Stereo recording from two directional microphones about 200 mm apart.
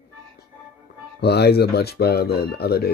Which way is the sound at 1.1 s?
55° left (ahead or behind).